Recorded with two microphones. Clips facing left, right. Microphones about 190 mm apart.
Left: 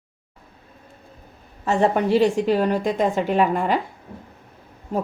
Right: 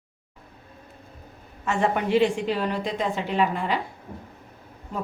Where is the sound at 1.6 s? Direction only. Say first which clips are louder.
Left 5 dB; 35° left (ahead or behind).